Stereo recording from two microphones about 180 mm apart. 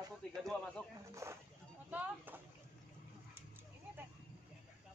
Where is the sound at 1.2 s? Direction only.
15° right (ahead or behind).